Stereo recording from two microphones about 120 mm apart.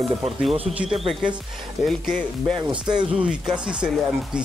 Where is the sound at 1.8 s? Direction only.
70° left (ahead or behind).